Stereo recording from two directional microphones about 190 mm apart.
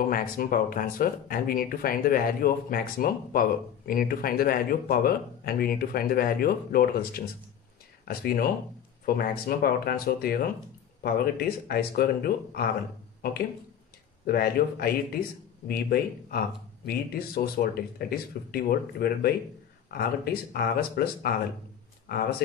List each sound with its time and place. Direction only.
0.1 s speech: 50° left (ahead or behind)
14.2 s speech: 50° left (ahead or behind)
20.5 s speech: 55° left (ahead or behind)
22.0 s a sound: 50° left (ahead or behind)